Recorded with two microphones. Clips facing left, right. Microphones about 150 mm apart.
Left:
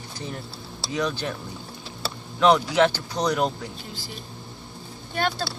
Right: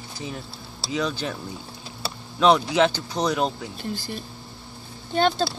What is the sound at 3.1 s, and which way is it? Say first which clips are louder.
Speech: even; 5° right (ahead or behind).